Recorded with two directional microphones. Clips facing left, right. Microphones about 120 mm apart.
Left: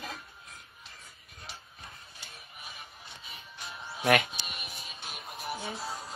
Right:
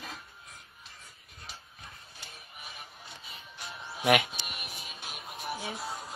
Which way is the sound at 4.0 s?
10° right (ahead or behind).